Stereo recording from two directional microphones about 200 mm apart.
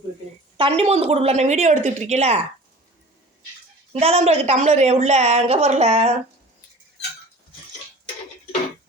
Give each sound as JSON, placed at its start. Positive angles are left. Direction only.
{"t": 0.5, "sound": "a woman's voice", "side_deg": -30}
{"t": 3.9, "sound": "a woman's voice", "side_deg": -30}